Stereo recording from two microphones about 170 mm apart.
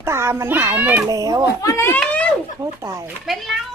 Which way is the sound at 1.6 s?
15° left (ahead or behind).